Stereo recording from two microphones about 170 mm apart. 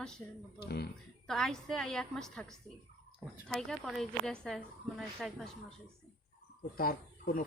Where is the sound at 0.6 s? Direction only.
70° left (ahead or behind).